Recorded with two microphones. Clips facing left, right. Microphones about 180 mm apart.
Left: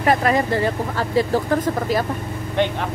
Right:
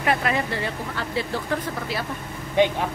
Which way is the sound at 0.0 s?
40° left (ahead or behind).